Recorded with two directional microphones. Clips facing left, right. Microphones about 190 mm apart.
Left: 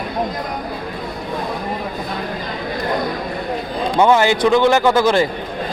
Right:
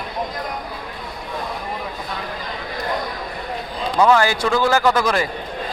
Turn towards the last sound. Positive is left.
turn(degrees=25)  # may be behind; listen again after turning